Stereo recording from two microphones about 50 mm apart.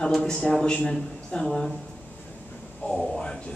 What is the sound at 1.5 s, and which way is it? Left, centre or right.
Speech, centre.